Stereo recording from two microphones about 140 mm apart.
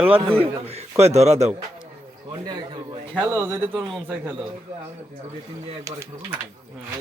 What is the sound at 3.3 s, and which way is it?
Speech, 15° right (ahead or behind).